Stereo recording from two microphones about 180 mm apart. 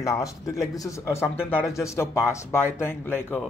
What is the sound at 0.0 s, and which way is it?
Speech, 20° left (ahead or behind).